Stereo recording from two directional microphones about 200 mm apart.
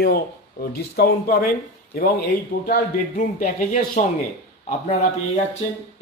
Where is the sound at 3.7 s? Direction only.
35° left (ahead or behind).